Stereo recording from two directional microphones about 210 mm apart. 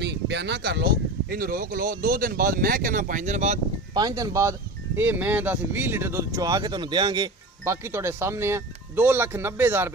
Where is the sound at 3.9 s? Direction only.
20° right (ahead or behind).